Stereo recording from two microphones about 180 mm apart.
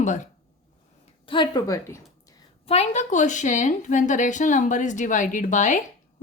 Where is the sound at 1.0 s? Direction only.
30° left (ahead or behind).